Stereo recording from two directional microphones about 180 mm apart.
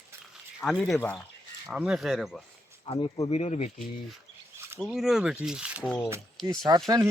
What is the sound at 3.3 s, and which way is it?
Speech, 40° left (ahead or behind).